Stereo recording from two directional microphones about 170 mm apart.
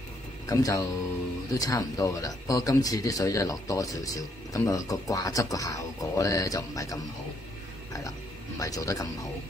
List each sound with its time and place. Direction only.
0.5 s speech: 20° left (ahead or behind)
8.5 s speech: 20° left (ahead or behind)